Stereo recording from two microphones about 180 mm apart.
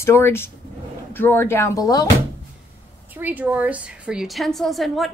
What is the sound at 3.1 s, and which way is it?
A woman's voice, 10° right (ahead or behind).